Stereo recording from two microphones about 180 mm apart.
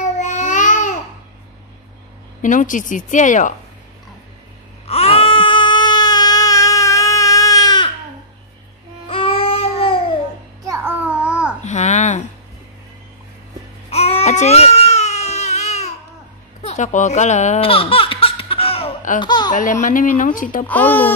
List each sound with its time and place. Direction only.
0.0 s babbling: 45° left (ahead or behind)
2.4 s speech: 45° left (ahead or behind)
4.8 s baby cry: 35° left (ahead or behind)
9.0 s babbling: 30° left (ahead or behind)
10.6 s babbling: 15° right (ahead or behind)
11.6 s a sound: 40° left (ahead or behind)
13.8 s baby cry: 35° left (ahead or behind)
16.6 s baby laughter: 40° left (ahead or behind)
19.2 s speech: 25° left (ahead or behind)
19.5 s speech: 45° left (ahead or behind)
20.6 s speech: 10° left (ahead or behind)